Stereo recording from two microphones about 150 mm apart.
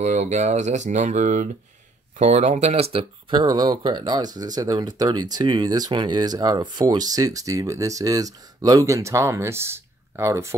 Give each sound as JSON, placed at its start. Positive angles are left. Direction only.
{"t": 0.0, "sound": "speech", "side_deg": -50}